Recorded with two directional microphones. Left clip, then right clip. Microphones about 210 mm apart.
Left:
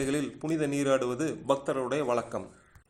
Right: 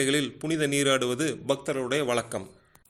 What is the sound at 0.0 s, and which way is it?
A man's voice, 35° right (ahead or behind).